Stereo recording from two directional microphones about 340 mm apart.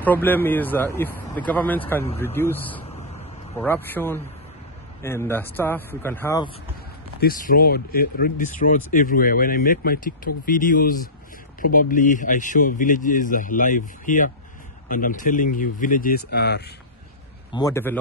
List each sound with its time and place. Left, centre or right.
0.0 s a man's voice: centre
2.9 s a sound: centre
3.5 s a man's voice: centre
7.2 s speech: left
17.5 s a man's voice: centre